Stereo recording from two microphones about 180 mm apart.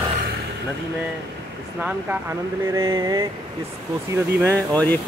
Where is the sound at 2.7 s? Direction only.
20° right (ahead or behind).